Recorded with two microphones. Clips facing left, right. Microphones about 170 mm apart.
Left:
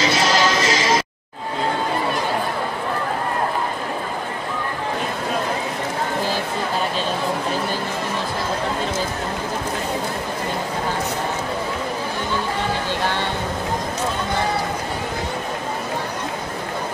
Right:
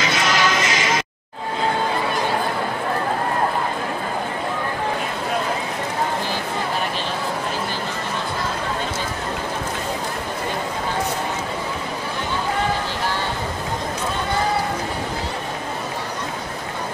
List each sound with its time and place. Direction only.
0.0 s music: 35° left (ahead or behind)